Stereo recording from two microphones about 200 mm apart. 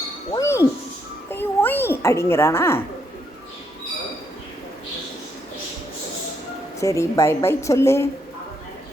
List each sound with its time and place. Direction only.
0.3 s speech: 15° left (ahead or behind)
1.3 s a sound: 10° left (ahead or behind)
6.7 s a woman's voice: 15° left (ahead or behind)